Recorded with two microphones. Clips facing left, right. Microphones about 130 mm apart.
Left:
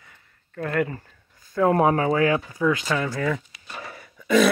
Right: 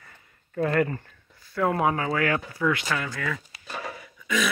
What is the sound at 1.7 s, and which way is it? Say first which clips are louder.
Speech: left 5 dB; 30° left (ahead or behind).